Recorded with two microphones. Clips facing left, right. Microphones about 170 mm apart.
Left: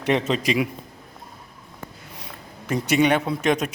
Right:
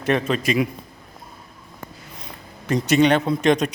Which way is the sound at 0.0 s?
20° left (ahead or behind).